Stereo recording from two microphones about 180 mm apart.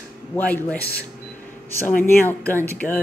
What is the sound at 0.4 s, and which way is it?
Speech, 10° left (ahead or behind).